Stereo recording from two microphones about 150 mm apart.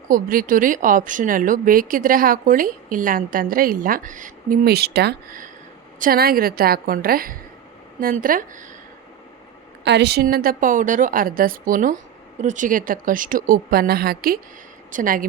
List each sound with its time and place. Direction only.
0.1 s a woman's voice: 65° right (ahead or behind)
10.0 s a woman's voice: 90° right; by 11.9 s 65° right (ahead or behind)
12.4 s speech: 55° right (ahead or behind); by 14.3 s 85° right
14.8 s a woman's voice: 65° right (ahead or behind)